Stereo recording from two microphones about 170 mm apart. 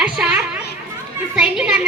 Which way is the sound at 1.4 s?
5° right (ahead or behind).